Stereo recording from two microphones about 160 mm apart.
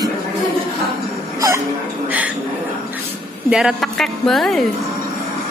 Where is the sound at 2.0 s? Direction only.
10° right (ahead or behind).